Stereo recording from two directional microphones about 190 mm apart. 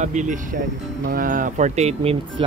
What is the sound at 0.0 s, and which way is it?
Speech, 40° right (ahead or behind).